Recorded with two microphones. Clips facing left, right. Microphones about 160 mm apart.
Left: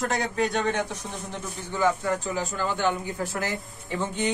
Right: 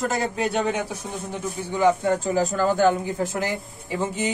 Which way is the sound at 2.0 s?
30° right (ahead or behind).